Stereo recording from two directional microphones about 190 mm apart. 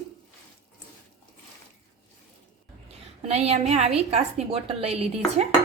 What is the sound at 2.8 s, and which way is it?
A woman's voice, 30° right (ahead or behind).